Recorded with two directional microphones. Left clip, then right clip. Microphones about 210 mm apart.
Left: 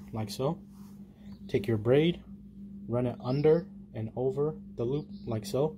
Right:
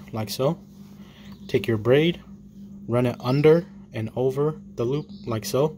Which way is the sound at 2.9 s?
30° right (ahead or behind).